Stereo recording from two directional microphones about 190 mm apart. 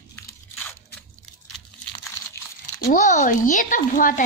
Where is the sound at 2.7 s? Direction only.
45° left (ahead or behind).